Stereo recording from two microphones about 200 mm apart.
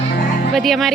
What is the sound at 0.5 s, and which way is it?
Speech, centre (ahead or behind).